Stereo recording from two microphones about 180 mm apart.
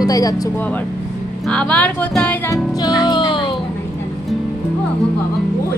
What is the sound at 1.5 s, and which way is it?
Speech, 5° left (ahead or behind).